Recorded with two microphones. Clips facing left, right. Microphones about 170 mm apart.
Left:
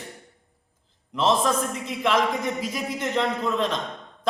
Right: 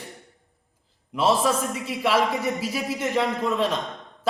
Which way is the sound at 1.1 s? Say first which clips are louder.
Right 1 dB; 10° right (ahead or behind).